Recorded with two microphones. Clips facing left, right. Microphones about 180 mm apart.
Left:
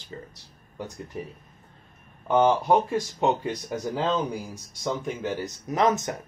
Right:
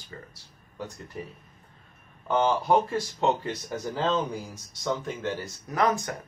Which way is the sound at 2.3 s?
15° left (ahead or behind).